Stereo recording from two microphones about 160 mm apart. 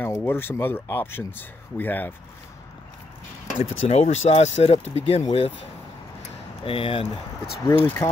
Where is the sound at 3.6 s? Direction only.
45° left (ahead or behind).